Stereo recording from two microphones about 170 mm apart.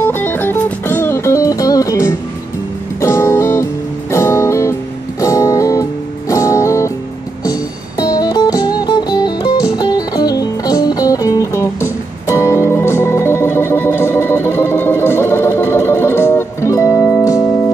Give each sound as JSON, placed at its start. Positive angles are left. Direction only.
{"t": 0.0, "sound": "music", "side_deg": 10}
{"t": 8.0, "sound": "music", "side_deg": 20}